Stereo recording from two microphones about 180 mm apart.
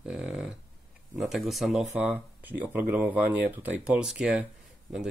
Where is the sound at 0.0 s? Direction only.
5° right (ahead or behind).